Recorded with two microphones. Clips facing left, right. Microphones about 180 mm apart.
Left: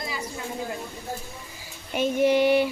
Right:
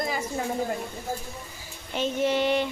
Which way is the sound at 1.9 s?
10° left (ahead or behind).